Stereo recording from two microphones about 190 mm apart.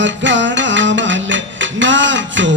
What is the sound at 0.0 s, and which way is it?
Music, 75° right (ahead or behind).